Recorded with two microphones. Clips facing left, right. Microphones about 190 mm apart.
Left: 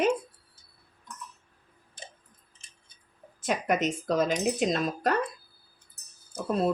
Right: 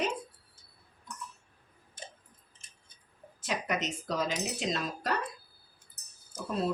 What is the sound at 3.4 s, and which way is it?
Speech, 50° left (ahead or behind).